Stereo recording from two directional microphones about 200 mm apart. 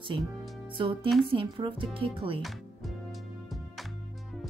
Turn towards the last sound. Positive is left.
turn(degrees=0)  # may be behind; listen again after turning